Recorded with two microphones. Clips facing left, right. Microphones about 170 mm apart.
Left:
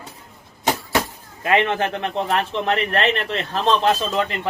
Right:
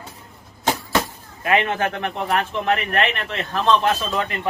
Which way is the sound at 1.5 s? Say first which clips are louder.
Left 1 dB; 30° left (ahead or behind).